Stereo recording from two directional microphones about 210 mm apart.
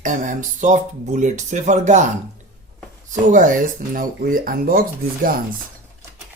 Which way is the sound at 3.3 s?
35° right (ahead or behind).